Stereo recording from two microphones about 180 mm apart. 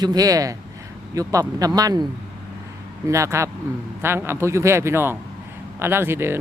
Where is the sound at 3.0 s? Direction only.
15° right (ahead or behind).